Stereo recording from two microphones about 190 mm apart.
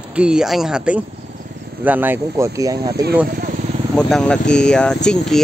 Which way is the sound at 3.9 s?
5° left (ahead or behind).